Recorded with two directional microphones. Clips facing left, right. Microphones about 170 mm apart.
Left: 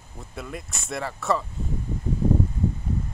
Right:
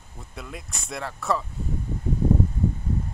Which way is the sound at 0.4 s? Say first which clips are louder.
Left 3 dB; centre (ahead or behind).